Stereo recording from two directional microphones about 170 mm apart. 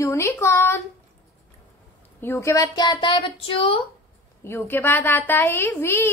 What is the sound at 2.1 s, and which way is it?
Speech, 15° left (ahead or behind).